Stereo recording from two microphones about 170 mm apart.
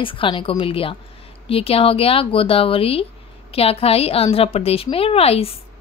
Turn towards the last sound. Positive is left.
turn(degrees=35)  # may be behind; listen again after turning